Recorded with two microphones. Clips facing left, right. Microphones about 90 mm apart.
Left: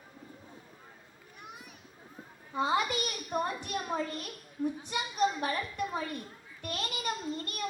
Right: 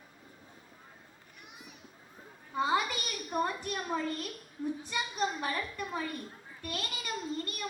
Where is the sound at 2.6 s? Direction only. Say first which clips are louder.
Even; 30° left (ahead or behind).